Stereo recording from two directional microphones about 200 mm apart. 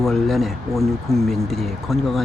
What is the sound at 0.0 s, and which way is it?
Speech, centre (ahead or behind).